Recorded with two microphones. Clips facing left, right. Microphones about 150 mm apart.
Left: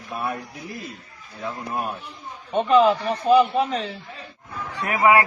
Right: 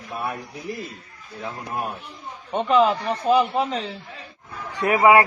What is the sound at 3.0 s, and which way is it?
Speech, 20° right (ahead or behind).